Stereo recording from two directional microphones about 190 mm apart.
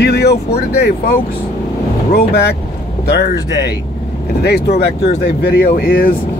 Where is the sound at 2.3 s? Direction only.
60° left (ahead or behind).